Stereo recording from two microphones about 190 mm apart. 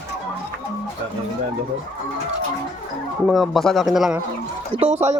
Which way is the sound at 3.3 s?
Centre (ahead or behind).